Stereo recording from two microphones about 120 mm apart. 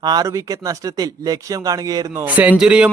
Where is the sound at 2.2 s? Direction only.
15° right (ahead or behind).